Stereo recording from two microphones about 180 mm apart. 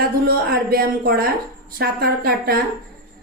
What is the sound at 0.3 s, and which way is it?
A woman's voice, 55° right (ahead or behind).